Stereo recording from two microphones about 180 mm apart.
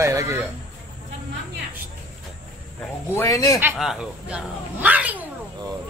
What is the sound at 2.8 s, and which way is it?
Speech, 15° left (ahead or behind).